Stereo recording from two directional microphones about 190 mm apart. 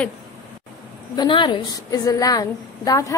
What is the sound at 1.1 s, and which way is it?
A woman's voice, 25° left (ahead or behind).